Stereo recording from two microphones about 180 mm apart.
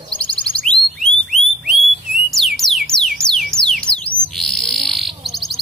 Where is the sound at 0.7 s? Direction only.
5° left (ahead or behind).